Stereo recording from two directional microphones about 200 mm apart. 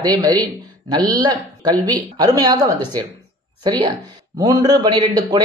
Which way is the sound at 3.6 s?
25° right (ahead or behind).